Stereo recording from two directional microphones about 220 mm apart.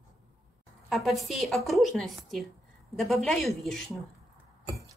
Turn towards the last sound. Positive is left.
turn(degrees=0)  # may be behind; listen again after turning